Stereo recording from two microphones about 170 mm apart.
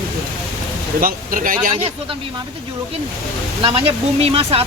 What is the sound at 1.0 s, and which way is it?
Speech, 55° right (ahead or behind).